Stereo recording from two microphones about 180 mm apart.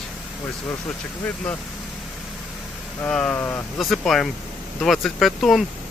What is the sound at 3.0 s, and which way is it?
Speech, 5° left (ahead or behind).